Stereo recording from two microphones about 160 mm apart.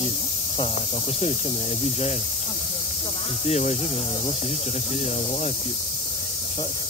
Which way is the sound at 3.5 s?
45° left (ahead or behind).